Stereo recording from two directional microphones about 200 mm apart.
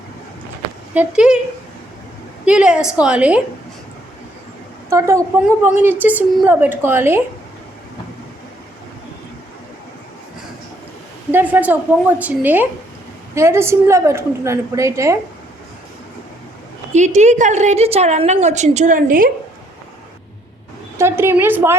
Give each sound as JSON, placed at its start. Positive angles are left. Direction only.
{"t": 0.9, "sound": "speech", "side_deg": -5}
{"t": 2.4, "sound": "a woman's voice", "side_deg": -5}
{"t": 4.9, "sound": "a woman's voice", "side_deg": -15}
{"t": 11.3, "sound": "a woman's voice", "side_deg": -10}
{"t": 16.9, "sound": "a woman's voice", "side_deg": -35}
{"t": 21.0, "sound": "a woman's voice", "side_deg": -10}